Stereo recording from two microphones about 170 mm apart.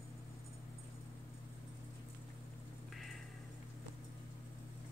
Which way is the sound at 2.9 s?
Centre (ahead or behind).